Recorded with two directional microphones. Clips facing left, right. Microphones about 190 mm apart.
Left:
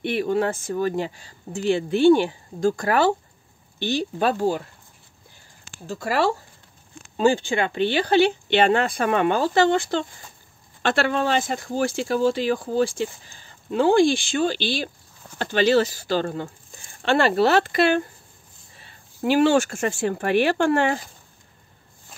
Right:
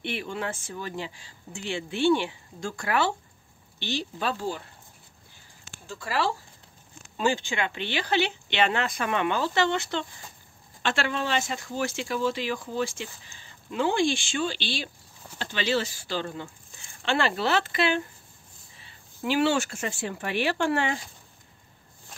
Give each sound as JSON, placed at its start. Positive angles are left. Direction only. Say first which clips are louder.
{"t": 0.0, "sound": "speech", "louder": "left 10 dB", "side_deg": 45}
{"t": 3.8, "sound": "speech", "louder": "left 8 dB", "side_deg": 50}
{"t": 6.0, "sound": "speech", "louder": "left 6 dB", "side_deg": 50}
{"t": 7.2, "sound": "speech", "louder": "left 7 dB", "side_deg": 35}
{"t": 11.8, "sound": "speech", "louder": "left 7 dB", "side_deg": 35}